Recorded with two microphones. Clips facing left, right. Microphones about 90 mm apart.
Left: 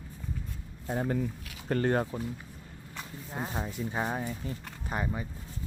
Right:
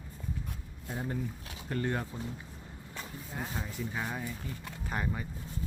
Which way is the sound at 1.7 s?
55° left (ahead or behind).